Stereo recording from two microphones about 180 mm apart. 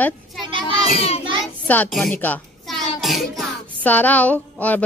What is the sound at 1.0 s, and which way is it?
Speech, 35° left (ahead or behind).